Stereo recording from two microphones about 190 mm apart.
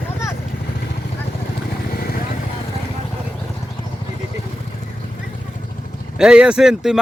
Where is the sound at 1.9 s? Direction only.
50° left (ahead or behind).